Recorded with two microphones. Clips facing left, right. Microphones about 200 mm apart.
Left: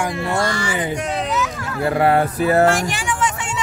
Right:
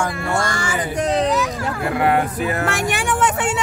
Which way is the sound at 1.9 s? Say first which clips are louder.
Left 2 dB; 35° left (ahead or behind).